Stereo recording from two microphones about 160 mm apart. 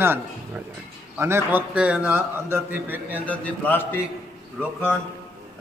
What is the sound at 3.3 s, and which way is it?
Speech, 10° left (ahead or behind).